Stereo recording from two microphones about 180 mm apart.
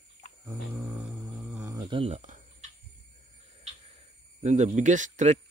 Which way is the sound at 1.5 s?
20° right (ahead or behind).